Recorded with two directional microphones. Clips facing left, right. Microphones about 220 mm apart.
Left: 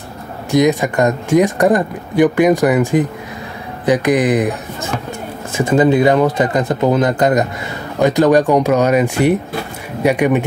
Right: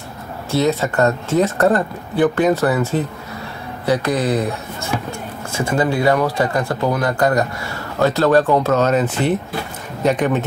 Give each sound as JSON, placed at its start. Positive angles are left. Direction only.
{"t": 0.5, "sound": "speech", "side_deg": 15}